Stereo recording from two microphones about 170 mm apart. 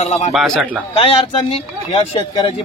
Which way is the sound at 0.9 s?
35° left (ahead or behind).